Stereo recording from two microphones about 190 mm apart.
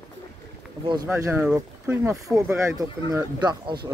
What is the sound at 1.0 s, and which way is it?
Speech, 15° right (ahead or behind).